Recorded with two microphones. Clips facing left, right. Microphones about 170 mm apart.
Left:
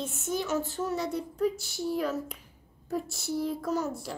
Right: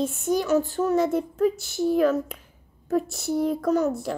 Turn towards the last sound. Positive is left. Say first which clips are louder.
# right 8 dB
turn(degrees=-60)  # may be behind; listen again after turning